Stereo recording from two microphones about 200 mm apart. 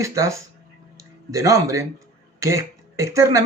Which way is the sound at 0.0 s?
15° right (ahead or behind).